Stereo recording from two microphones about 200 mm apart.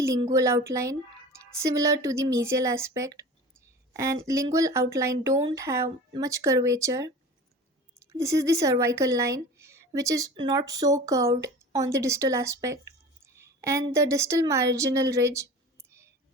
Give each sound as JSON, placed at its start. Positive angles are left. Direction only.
{"t": 0.0, "sound": "speech", "side_deg": -15}
{"t": 8.1, "sound": "speech", "side_deg": -15}